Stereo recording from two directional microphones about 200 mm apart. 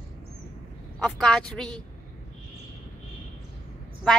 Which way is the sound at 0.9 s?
5° left (ahead or behind).